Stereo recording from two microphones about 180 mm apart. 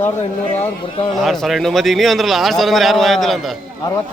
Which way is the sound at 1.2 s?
Centre (ahead or behind).